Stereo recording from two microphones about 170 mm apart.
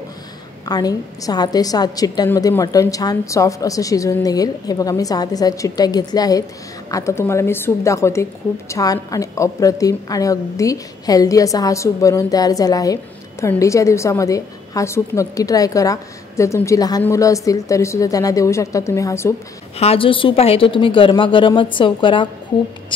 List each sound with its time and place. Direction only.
0.7 s a woman's voice: 20° left (ahead or behind)
19.8 s a woman's voice: 35° left (ahead or behind)